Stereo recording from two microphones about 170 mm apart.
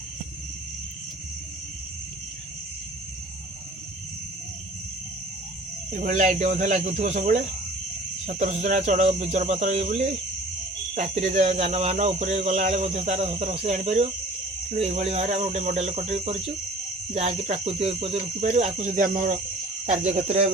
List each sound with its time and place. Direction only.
5.9 s speech: 50° right (ahead or behind)
19.8 s speech: 40° right (ahead or behind)